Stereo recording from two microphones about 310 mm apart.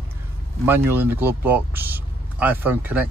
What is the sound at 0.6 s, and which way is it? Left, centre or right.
Speech, centre.